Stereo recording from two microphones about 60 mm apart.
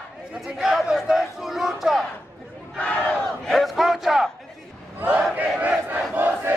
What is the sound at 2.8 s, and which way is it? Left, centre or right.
Battle cry, centre.